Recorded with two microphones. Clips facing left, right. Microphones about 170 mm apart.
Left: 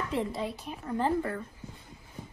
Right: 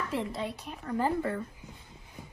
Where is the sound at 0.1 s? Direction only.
Centre (ahead or behind).